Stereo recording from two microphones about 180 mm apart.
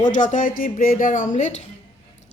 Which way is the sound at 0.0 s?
45° left (ahead or behind).